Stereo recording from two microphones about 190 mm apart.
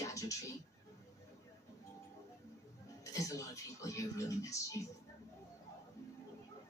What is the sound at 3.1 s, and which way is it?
Speech, 15° left (ahead or behind).